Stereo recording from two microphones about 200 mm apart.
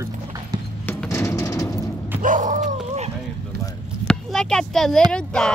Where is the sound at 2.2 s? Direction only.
40° right (ahead or behind).